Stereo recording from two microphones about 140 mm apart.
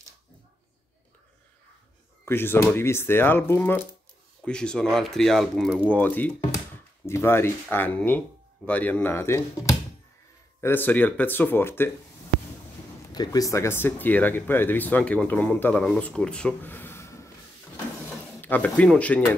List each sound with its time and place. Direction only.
2.2 s speech: 15° left (ahead or behind)
5.9 s speech: 10° left (ahead or behind)
13.1 s speech: 30° left (ahead or behind)
18.4 s speech: 10° left (ahead or behind)